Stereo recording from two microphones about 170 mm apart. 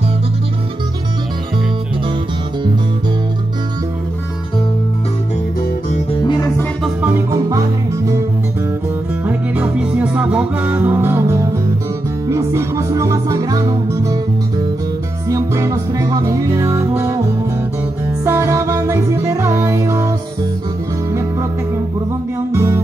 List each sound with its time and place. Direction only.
6.2 s music: 20° left (ahead or behind)
7.0 s music: 15° right (ahead or behind)
9.2 s music: 10° right (ahead or behind)
15.2 s music: 15° right (ahead or behind)
18.2 s music: 15° right (ahead or behind)
22.5 s music: 15° right (ahead or behind)